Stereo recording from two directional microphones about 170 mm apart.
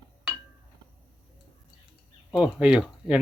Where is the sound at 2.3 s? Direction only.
5° right (ahead or behind).